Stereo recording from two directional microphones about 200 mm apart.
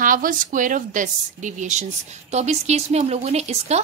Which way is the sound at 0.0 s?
45° right (ahead or behind).